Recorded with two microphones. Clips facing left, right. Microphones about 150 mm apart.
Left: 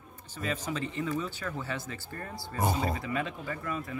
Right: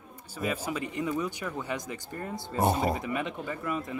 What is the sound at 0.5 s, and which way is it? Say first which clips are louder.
Speech: right 1 dB; 10° right (ahead or behind).